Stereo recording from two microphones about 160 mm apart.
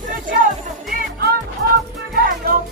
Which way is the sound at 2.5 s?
70° right (ahead or behind).